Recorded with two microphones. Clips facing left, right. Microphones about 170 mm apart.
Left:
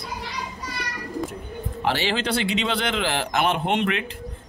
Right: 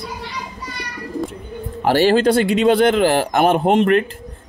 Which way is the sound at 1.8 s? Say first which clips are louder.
Right 11 dB; 45° right (ahead or behind).